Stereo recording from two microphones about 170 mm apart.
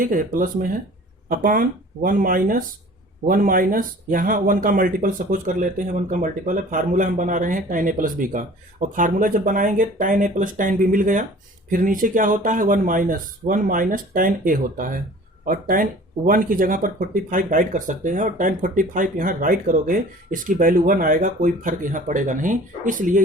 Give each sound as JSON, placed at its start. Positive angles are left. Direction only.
{"t": 0.0, "sound": "speech", "side_deg": -55}